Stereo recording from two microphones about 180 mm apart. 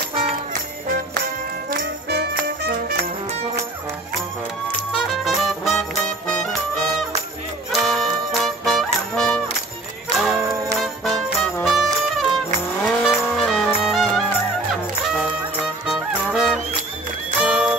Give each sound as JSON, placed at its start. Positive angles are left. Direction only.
{"t": 1.7, "sound": "music", "side_deg": -65}
{"t": 4.9, "sound": "music", "side_deg": 0}
{"t": 7.7, "sound": "music", "side_deg": 0}
{"t": 15.9, "sound": "music", "side_deg": 0}